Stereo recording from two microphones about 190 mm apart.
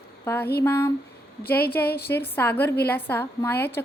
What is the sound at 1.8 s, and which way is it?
Speech, 55° left (ahead or behind).